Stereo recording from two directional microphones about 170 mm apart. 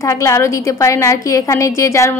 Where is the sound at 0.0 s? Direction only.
20° left (ahead or behind).